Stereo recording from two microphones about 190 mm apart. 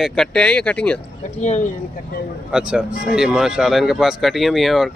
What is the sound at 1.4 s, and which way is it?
Speech, 40° left (ahead or behind).